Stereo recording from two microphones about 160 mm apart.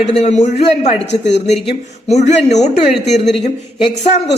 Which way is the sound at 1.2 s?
90° left.